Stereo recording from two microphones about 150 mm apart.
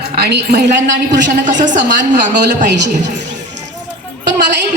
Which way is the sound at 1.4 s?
55° right (ahead or behind).